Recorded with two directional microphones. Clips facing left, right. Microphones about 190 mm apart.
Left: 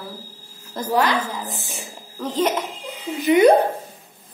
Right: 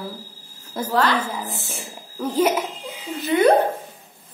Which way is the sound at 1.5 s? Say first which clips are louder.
Right 1 dB; 15° left (ahead or behind).